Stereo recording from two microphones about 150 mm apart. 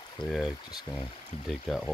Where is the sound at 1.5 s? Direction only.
Centre (ahead or behind).